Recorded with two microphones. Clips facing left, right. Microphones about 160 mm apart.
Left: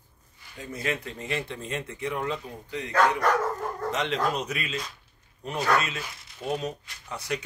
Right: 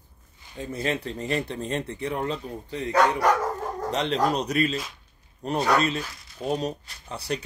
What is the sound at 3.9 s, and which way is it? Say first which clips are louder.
Speech: right 4 dB; 35° right (ahead or behind).